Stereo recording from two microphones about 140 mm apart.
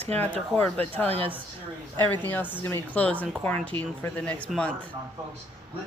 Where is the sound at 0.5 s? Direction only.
10° left (ahead or behind).